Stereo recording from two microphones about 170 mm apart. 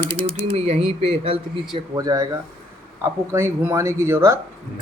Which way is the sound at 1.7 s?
20° right (ahead or behind).